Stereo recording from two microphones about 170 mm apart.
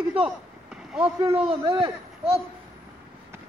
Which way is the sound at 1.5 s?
30° right (ahead or behind).